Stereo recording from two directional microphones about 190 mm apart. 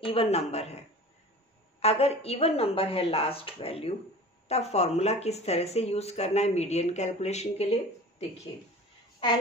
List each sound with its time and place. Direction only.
0.0 s speech: 30° left (ahead or behind)
1.8 s speech: 35° left (ahead or behind)